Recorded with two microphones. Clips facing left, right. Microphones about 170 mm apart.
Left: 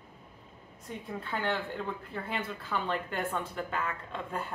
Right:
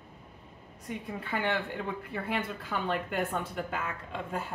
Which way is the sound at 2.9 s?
10° right (ahead or behind).